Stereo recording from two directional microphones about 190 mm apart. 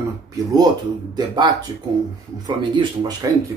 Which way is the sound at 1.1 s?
20° right (ahead or behind).